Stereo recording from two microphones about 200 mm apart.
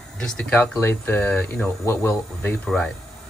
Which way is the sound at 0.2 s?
5° left (ahead or behind).